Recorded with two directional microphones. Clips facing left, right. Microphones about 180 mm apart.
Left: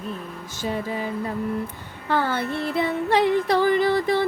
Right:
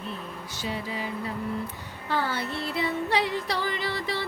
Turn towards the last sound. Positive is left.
turn(degrees=50)  # may be behind; listen again after turning